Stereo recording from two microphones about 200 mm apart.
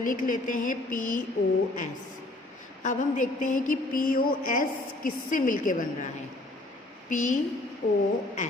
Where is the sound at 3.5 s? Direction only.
45° left (ahead or behind).